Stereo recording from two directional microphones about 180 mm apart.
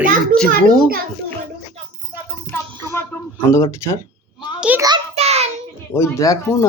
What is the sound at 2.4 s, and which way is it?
Music, 15° left (ahead or behind).